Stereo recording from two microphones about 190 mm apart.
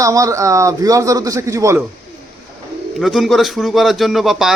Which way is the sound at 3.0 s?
Centre (ahead or behind).